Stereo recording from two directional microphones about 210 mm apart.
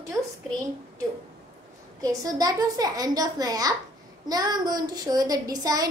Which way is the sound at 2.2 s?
15° right (ahead or behind).